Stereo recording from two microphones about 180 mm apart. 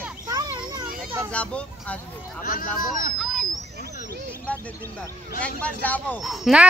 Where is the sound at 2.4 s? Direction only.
50° left (ahead or behind).